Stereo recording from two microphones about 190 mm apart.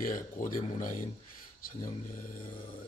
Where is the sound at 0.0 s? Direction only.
45° left (ahead or behind).